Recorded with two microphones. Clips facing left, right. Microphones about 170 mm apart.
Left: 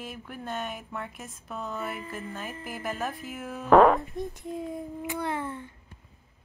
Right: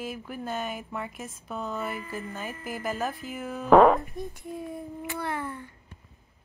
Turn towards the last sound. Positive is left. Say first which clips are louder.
# left 1 dB
turn(degrees=20)  # may be behind; listen again after turning